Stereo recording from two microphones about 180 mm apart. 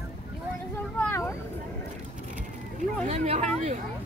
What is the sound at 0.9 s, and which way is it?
Vehicle, 10° left (ahead or behind).